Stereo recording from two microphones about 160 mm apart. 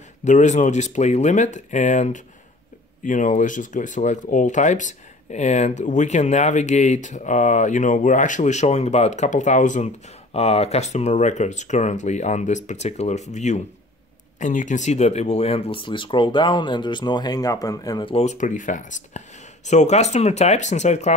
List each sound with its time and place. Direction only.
0.2 s speech: 50° left (ahead or behind); by 18.1 s 25° left (ahead or behind)
18.1 s speech: 45° left (ahead or behind)